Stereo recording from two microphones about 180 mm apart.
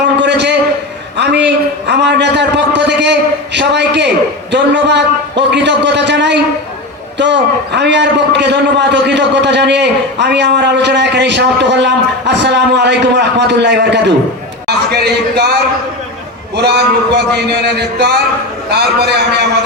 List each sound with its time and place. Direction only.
0.2 s a sound: 70° right (ahead or behind)
1.9 s a man's voice: 70° right (ahead or behind)
16.6 s a man's voice: 65° right (ahead or behind)
18.7 s a man's voice: 65° right (ahead or behind)